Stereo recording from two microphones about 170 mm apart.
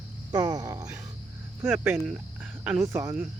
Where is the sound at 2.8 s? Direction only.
20° right (ahead or behind).